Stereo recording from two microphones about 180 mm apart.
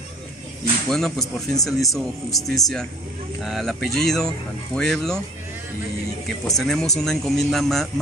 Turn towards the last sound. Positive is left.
turn(degrees=0)  # may be behind; listen again after turning